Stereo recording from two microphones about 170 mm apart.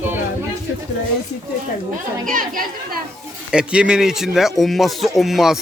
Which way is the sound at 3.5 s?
5° right (ahead or behind).